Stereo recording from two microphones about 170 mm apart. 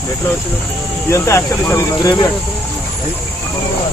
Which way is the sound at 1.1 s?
15° left (ahead or behind).